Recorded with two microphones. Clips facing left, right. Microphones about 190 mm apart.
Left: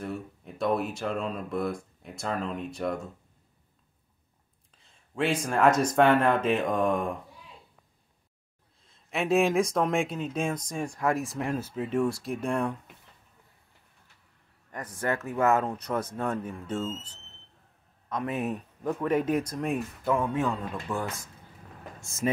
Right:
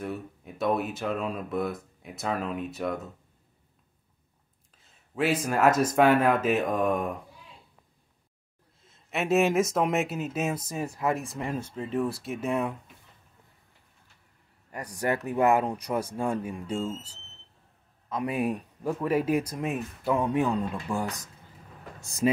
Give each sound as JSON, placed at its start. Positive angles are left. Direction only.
{"t": 0.0, "sound": "speech", "side_deg": 0}
{"t": 5.1, "sound": "speech", "side_deg": -5}
{"t": 8.8, "sound": "speech", "side_deg": -5}
{"t": 15.2, "sound": "speech", "side_deg": -15}
{"t": 20.2, "sound": "speech", "side_deg": -15}
{"t": 22.2, "sound": "speech", "side_deg": -30}